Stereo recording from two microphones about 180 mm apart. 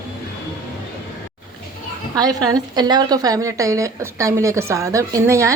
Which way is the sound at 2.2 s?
20° right (ahead or behind).